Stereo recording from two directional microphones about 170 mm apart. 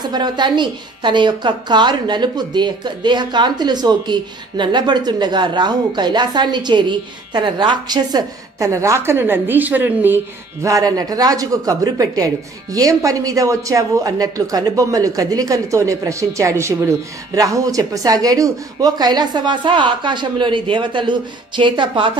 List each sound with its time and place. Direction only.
0.1 s a woman's voice: 25° right (ahead or behind)